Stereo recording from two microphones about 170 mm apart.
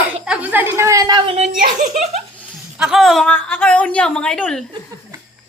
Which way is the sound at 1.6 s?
45° right (ahead or behind).